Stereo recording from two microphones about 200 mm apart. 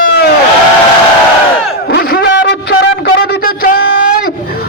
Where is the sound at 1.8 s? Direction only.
50° left (ahead or behind).